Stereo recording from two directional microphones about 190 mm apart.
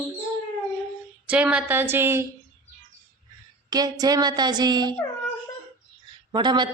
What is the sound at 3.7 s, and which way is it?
A woman's voice, 20° right (ahead or behind).